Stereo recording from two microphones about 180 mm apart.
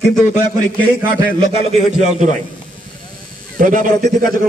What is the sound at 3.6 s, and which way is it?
Speech, 50° right (ahead or behind).